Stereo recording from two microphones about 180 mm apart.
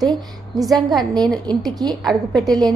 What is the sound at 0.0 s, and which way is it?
A woman's voice, 20° right (ahead or behind).